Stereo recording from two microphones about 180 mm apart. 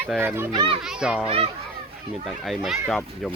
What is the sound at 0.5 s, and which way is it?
Speech, 30° right (ahead or behind).